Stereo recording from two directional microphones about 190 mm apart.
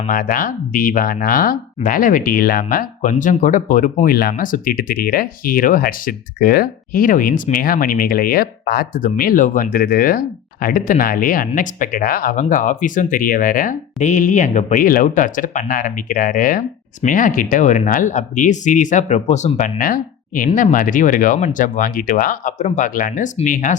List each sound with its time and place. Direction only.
0.1 s speech: 45° left (ahead or behind)
19.8 s speech: 50° left (ahead or behind)